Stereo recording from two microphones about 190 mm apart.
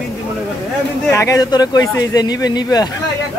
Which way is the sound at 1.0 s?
15° left (ahead or behind).